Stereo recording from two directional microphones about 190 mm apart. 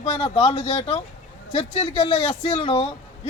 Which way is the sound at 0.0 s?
30° left (ahead or behind).